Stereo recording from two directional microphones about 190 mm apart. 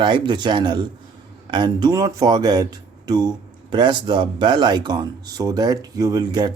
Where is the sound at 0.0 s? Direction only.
25° right (ahead or behind).